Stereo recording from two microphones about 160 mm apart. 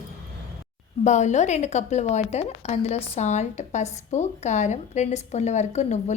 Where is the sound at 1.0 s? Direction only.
50° left (ahead or behind).